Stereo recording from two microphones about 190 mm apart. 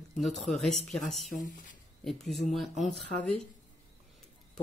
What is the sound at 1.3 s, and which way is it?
Speech, 45° left (ahead or behind).